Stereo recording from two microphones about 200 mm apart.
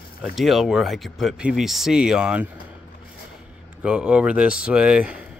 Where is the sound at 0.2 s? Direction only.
Centre (ahead or behind).